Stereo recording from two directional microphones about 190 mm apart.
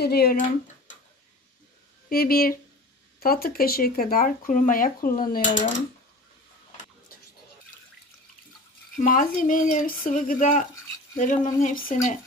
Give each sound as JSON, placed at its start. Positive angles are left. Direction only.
{"t": 0.0, "sound": "speech", "side_deg": 55}
{"t": 2.0, "sound": "speech", "side_deg": 55}
{"t": 8.9, "sound": "speech", "side_deg": 45}